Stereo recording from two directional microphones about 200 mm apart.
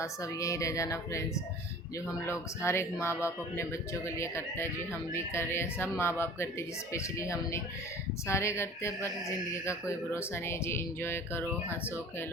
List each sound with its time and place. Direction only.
0.0 s speech: 15° left (ahead or behind)